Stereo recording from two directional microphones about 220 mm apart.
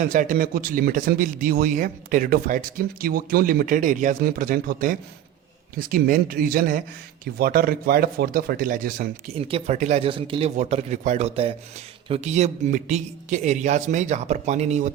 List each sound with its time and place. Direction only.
0.0 s speech: 35° right (ahead or behind)
9.4 s speech: 25° right (ahead or behind)